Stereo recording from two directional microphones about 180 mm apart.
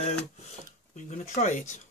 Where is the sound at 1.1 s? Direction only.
45° left (ahead or behind).